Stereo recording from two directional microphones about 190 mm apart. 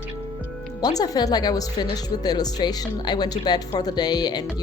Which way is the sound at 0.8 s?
20° left (ahead or behind).